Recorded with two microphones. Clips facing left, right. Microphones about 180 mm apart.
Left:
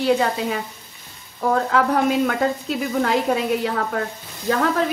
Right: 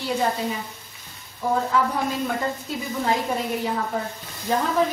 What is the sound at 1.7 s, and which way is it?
Speech, 75° left (ahead or behind).